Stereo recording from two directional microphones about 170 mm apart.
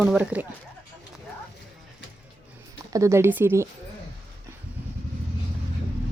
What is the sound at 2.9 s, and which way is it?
Speech, 15° right (ahead or behind).